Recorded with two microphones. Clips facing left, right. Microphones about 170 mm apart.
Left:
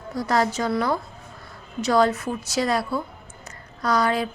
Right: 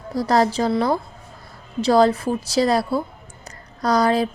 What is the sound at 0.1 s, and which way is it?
A woman's voice, 35° right (ahead or behind).